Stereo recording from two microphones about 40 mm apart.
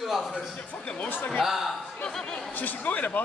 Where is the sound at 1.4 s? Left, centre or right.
Centre.